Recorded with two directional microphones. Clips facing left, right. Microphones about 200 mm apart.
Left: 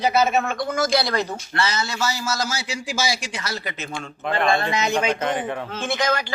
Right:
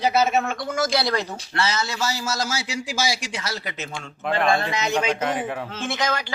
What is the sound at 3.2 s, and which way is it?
Speech, 50° left (ahead or behind).